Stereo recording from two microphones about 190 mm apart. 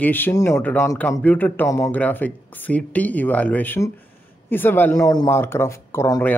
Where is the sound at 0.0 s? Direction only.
10° left (ahead or behind).